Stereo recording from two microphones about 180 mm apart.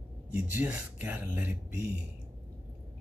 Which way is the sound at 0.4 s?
10° right (ahead or behind).